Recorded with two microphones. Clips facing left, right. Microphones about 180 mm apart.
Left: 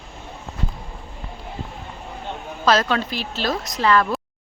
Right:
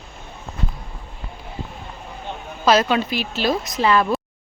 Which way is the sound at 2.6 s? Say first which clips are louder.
Right 2 dB; 10° right (ahead or behind).